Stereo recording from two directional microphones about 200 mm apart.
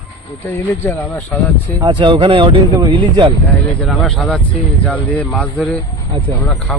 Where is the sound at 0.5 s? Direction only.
15° left (ahead or behind).